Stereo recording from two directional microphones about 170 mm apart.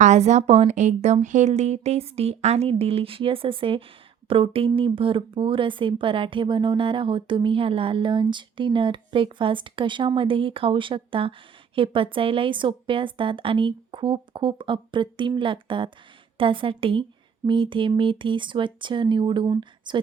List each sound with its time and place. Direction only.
0.0 s a woman's voice: 45° right (ahead or behind); by 20.0 s 25° right (ahead or behind)